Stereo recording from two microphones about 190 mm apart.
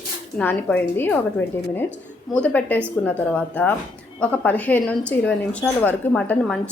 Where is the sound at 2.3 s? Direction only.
10° left (ahead or behind).